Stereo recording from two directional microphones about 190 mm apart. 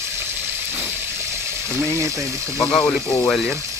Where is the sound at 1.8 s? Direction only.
15° right (ahead or behind).